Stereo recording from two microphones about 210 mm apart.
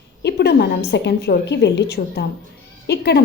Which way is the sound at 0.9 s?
55° left (ahead or behind).